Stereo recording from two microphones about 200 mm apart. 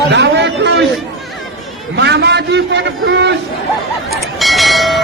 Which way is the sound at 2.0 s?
60° right (ahead or behind).